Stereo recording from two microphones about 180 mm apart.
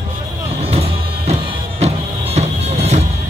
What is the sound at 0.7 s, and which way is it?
Music, 35° right (ahead or behind).